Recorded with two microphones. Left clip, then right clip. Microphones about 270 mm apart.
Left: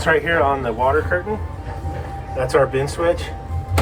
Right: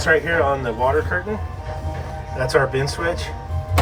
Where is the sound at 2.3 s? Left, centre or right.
Centre.